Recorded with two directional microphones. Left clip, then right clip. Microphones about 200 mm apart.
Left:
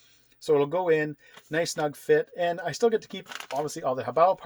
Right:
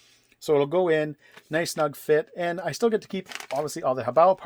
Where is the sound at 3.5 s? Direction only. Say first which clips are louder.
Right 2 dB; 40° right (ahead or behind).